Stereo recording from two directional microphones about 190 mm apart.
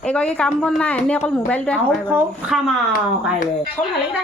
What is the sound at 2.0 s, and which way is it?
Speech, 10° right (ahead or behind).